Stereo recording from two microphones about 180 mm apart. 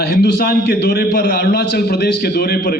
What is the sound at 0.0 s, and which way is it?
A man's voice, 60° left (ahead or behind).